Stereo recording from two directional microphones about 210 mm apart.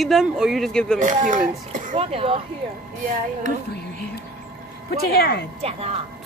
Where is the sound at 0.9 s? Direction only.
35° right (ahead or behind).